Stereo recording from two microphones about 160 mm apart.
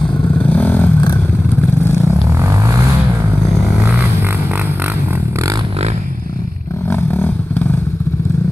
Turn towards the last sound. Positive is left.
turn(degrees=15)  # may be behind; listen again after turning